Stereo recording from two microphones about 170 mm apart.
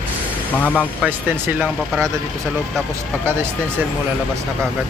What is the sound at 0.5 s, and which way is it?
Speech, 10° left (ahead or behind).